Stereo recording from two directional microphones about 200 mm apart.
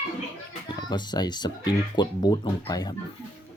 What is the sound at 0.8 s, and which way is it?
Speech, 20° left (ahead or behind).